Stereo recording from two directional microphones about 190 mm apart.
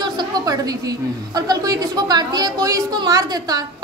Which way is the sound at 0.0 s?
20° right (ahead or behind).